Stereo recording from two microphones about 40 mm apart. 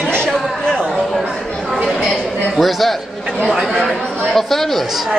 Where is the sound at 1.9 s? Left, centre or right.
Left.